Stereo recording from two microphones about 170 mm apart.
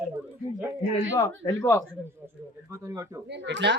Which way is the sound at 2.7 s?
20° right (ahead or behind).